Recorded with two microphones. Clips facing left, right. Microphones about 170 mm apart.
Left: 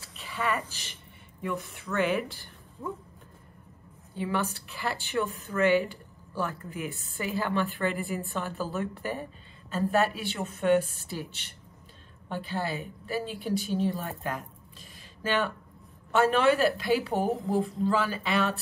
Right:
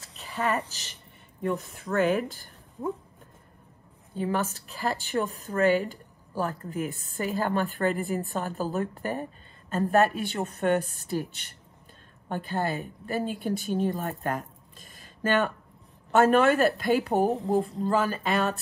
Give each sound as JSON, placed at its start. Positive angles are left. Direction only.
{"t": 0.1, "sound": "a woman's voice", "side_deg": -35}
{"t": 4.1, "sound": "a woman's voice", "side_deg": -40}